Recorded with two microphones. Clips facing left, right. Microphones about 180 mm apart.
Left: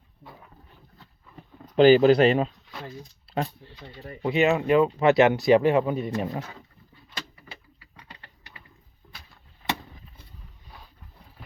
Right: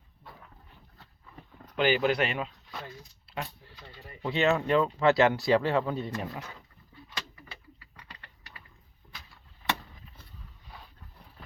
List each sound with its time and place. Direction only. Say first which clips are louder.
1.7 s speech: left 10 dB; 35° left (ahead or behind)